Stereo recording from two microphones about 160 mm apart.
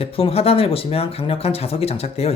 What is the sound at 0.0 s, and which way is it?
Speech, 40° left (ahead or behind).